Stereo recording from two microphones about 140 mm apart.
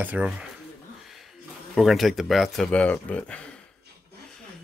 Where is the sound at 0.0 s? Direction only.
10° right (ahead or behind).